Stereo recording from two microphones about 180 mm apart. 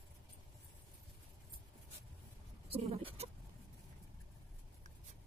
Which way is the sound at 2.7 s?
35° right (ahead or behind).